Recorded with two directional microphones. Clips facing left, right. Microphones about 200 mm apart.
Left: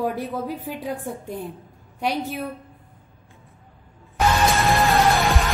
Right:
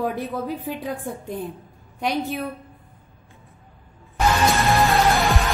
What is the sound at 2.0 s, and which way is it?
Speech, 10° left (ahead or behind).